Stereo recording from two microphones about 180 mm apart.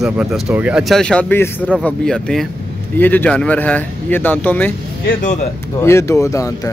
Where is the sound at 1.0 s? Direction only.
5° left (ahead or behind).